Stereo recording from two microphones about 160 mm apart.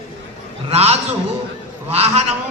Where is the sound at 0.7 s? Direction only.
40° right (ahead or behind).